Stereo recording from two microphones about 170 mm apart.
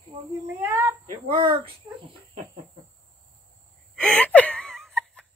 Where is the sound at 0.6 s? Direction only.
10° right (ahead or behind).